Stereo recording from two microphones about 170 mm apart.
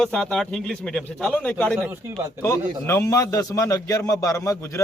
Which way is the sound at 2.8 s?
15° left (ahead or behind).